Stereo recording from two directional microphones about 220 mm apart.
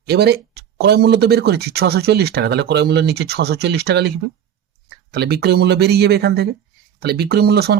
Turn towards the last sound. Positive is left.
turn(degrees=-45)  # may be behind; listen again after turning